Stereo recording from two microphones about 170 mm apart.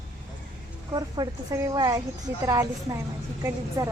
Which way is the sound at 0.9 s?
20° right (ahead or behind).